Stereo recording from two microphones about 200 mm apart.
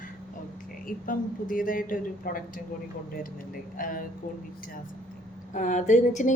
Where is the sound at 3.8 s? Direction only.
45° left (ahead or behind).